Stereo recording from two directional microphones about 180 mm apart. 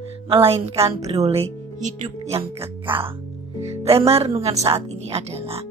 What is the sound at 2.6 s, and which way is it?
A woman's voice, 30° right (ahead or behind).